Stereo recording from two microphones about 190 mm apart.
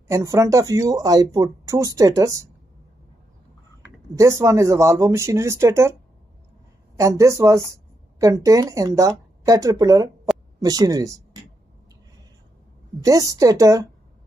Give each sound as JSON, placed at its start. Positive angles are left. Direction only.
{"t": 0.1, "sound": "speech", "side_deg": -15}
{"t": 4.1, "sound": "speech", "side_deg": -15}
{"t": 7.0, "sound": "speech", "side_deg": -15}
{"t": 13.0, "sound": "speech", "side_deg": -20}